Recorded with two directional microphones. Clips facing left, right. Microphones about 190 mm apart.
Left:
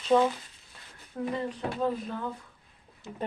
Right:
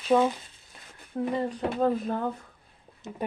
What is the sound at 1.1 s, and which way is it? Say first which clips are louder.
Speech: right 4 dB; 30° right (ahead or behind).